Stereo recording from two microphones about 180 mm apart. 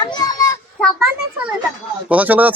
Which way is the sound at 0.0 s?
20° left (ahead or behind).